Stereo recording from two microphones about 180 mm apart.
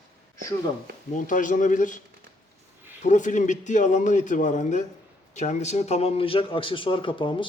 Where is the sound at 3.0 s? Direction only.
45° left (ahead or behind); by 7.5 s 30° left (ahead or behind).